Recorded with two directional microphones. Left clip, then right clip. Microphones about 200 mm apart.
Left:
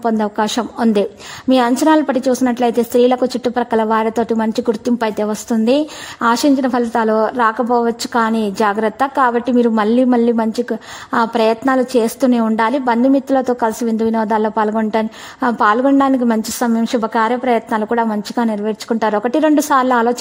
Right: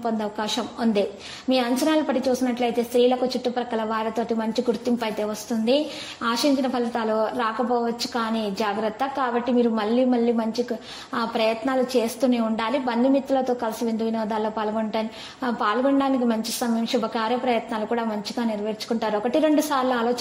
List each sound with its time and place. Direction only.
0.0 s a woman's voice: 45° left (ahead or behind)